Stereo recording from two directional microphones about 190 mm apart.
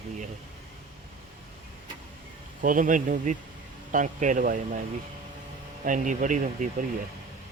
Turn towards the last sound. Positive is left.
turn(degrees=-45)  # may be behind; listen again after turning